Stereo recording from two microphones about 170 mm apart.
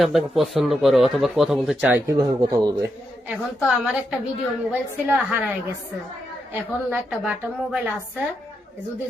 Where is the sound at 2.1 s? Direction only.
25° right (ahead or behind).